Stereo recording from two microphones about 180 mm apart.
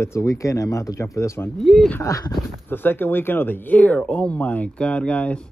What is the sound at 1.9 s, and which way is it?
Speech, 15° left (ahead or behind).